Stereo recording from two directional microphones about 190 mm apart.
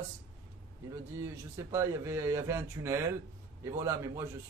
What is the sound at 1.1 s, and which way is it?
A man's voice, 15° right (ahead or behind).